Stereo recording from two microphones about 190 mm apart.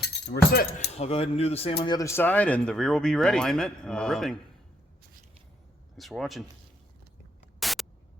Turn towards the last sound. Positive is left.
turn(degrees=0)  # may be behind; listen again after turning